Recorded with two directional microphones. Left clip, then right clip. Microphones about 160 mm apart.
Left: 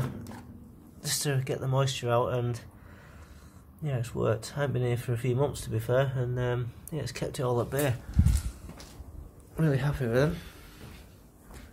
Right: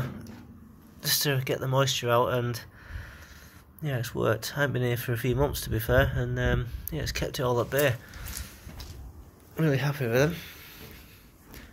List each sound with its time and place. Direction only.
1.0 s speech: centre (ahead or behind)
9.6 s speech: 5° left (ahead or behind)